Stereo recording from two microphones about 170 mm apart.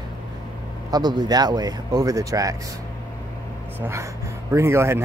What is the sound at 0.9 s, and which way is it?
Speech, 25° right (ahead or behind).